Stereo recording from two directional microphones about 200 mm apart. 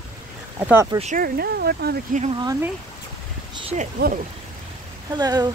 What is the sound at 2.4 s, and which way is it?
Speech, 15° right (ahead or behind).